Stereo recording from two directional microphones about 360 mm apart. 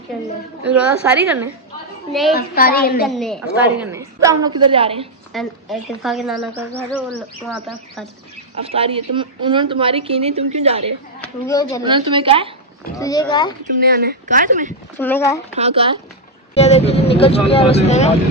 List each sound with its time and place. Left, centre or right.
0.7 s a woman's voice: centre
2.3 s a woman's voice: left
3.2 s a woman's voice: centre
5.3 s a woman's voice: centre
8.5 s a woman's voice: centre
11.1 s a woman's voice: centre
11.8 s a woman's voice: centre
12.9 s speech: centre
13.7 s speech: right
15.0 s a woman's voice: centre
15.5 s a woman's voice: centre
16.5 s speech: centre